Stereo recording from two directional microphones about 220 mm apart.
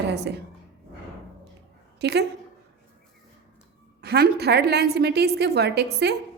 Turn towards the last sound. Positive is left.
turn(degrees=-50)  # may be behind; listen again after turning